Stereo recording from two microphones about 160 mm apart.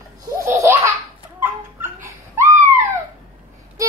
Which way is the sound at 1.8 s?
15° right (ahead or behind).